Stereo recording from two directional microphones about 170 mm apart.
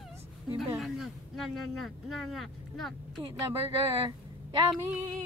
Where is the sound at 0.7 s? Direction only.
Centre (ahead or behind).